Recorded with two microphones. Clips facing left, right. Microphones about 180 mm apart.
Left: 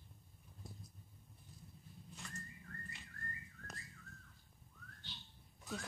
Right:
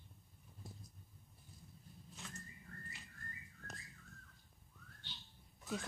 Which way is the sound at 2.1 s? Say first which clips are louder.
Left 1 dB; centre (ahead or behind).